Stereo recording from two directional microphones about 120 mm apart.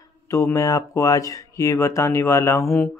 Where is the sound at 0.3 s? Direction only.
25° left (ahead or behind).